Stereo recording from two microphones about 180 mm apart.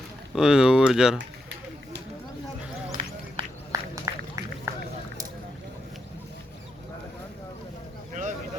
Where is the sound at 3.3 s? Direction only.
20° right (ahead or behind).